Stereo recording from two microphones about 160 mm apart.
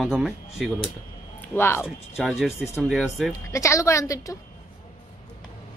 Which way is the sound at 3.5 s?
20° left (ahead or behind).